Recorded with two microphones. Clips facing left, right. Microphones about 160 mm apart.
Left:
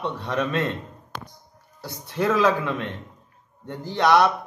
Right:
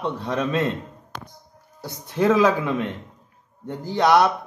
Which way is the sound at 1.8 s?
15° right (ahead or behind).